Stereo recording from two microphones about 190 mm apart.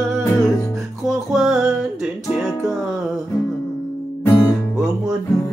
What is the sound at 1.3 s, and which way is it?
Music, centre (ahead or behind).